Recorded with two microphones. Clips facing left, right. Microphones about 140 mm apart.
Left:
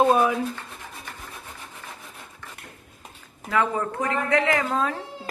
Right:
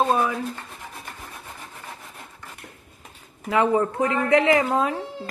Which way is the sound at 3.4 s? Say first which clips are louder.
Right 4 dB; 20° right (ahead or behind).